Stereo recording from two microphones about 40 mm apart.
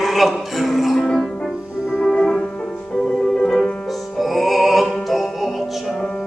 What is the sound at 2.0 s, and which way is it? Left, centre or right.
Music, centre.